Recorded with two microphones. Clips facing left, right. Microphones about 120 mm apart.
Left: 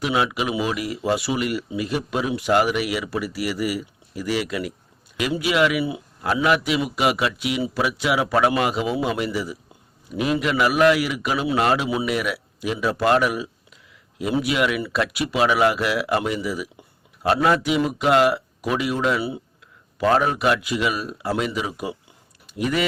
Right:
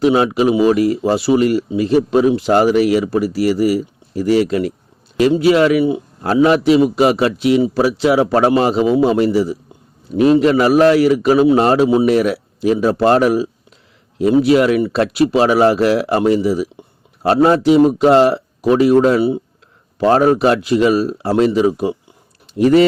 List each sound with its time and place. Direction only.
0.0 s speech: 35° right (ahead or behind)